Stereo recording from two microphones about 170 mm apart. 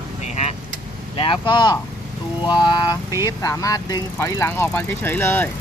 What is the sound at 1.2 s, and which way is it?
Speech, 30° left (ahead or behind).